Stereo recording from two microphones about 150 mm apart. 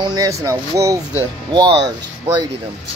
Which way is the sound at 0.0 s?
25° right (ahead or behind).